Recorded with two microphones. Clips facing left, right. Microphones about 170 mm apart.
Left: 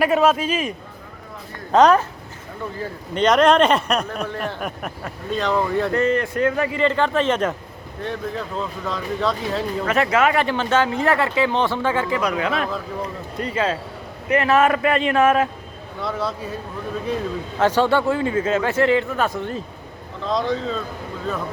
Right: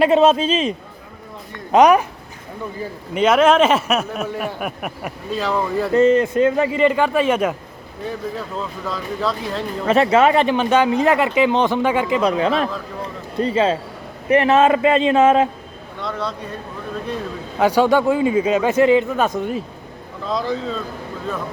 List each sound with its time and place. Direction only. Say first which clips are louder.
0.0 s speech: right 4 dB; 25° right (ahead or behind)
1.7 s a man's voice: right 2 dB; 15° right (ahead or behind)
3.2 s speech: right 1 dB; 5° right (ahead or behind)
5.9 s speech: right 6 dB; 20° right (ahead or behind); by 9.6 s centre (ahead or behind)
9.8 s speech: right 5 dB; 25° right (ahead or behind)
16.0 s speech: left 1 dB; 5° left (ahead or behind)
17.6 s a man's voice: right 3 dB; 10° right (ahead or behind)
20.2 s speech: even; 5° right (ahead or behind)